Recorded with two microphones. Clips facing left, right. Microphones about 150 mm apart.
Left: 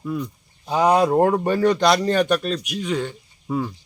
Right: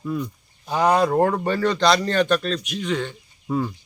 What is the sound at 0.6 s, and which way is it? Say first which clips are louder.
Speech: left 2 dB; 20° left (ahead or behind).